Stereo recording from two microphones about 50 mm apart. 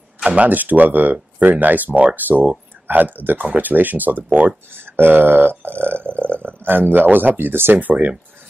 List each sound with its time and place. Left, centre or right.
0.2 s speech: right
0.5 s speech: right
4.7 s burping: right